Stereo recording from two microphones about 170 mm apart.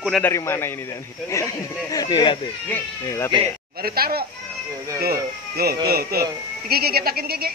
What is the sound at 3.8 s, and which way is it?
Speech, 60° right (ahead or behind).